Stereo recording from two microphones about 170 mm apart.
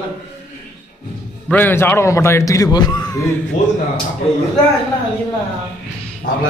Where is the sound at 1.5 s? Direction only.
10° left (ahead or behind).